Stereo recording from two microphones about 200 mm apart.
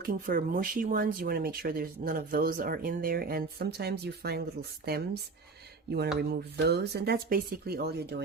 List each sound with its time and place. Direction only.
0.0 s speech: 45° right (ahead or behind)